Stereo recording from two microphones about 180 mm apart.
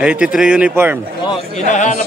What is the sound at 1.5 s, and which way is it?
Speech, 40° left (ahead or behind).